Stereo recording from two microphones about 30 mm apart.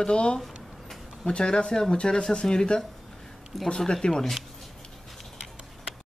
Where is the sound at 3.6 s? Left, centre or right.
Left.